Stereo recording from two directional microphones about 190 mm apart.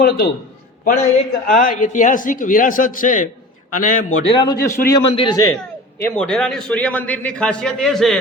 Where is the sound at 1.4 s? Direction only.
50° left (ahead or behind).